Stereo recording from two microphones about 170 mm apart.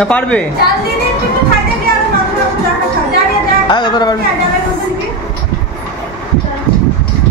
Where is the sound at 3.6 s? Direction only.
25° left (ahead or behind).